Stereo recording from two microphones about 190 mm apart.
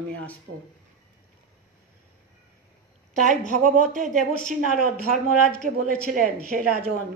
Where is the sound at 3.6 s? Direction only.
45° right (ahead or behind).